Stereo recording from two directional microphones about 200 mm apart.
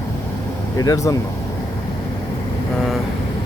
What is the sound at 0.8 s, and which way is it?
Speech, 15° left (ahead or behind).